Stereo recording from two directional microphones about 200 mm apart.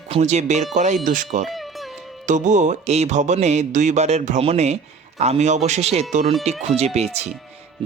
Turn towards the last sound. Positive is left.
turn(degrees=-35)  # may be behind; listen again after turning